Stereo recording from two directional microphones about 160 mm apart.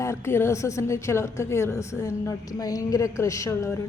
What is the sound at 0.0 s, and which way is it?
A woman's voice, 15° left (ahead or behind).